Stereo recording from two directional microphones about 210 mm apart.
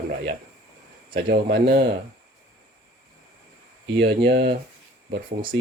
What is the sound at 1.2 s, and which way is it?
Speech, 45° right (ahead or behind).